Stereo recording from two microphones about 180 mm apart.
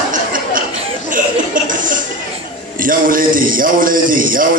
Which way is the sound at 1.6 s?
45° right (ahead or behind).